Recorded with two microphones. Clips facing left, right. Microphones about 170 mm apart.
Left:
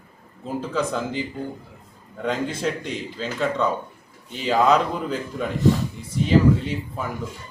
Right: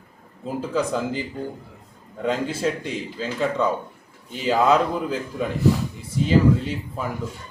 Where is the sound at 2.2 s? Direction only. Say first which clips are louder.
Right 1 dB; 5° right (ahead or behind).